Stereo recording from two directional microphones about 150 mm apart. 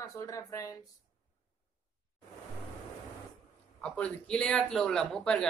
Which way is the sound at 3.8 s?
5° left (ahead or behind).